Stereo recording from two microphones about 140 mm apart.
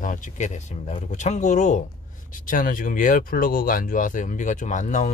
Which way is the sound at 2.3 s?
70° left (ahead or behind).